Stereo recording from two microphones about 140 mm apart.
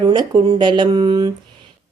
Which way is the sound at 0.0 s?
30° right (ahead or behind).